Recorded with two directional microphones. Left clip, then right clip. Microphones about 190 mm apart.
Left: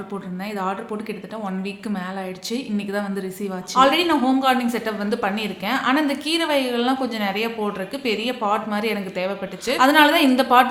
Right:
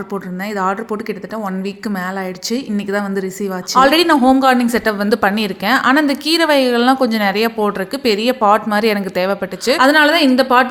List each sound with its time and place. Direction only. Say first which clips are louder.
0.5 s speech: right 8 dB; 40° right (ahead or behind)
2.5 s a woman's voice: right 7 dB; 40° right (ahead or behind)
9.8 s a woman's voice: right 3 dB; 25° right (ahead or behind)